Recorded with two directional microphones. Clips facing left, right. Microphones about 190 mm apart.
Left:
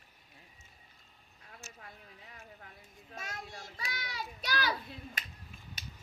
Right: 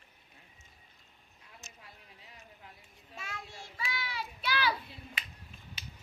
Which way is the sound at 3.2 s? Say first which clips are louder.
Left 1 dB; 40° left (ahead or behind).